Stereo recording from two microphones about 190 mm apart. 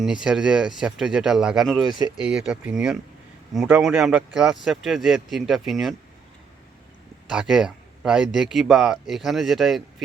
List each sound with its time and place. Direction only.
0.0 s a man's voice: 5° right (ahead or behind)
1.9 s speech: 25° left (ahead or behind)
2.2 s a man's voice: 5° right (ahead or behind)
7.3 s a man's voice: centre (ahead or behind)